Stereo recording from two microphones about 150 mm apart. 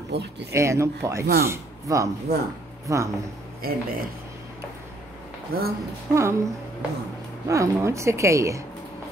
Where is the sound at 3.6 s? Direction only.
90° right.